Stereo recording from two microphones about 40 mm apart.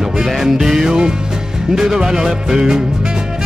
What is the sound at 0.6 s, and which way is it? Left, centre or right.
Music, centre.